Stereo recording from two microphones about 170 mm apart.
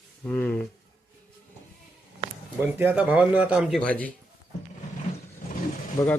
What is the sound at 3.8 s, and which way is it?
Speech, 10° left (ahead or behind).